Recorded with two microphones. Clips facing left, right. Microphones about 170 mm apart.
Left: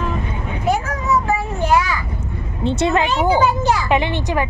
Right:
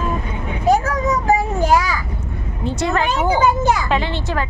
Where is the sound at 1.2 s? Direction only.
40° right (ahead or behind).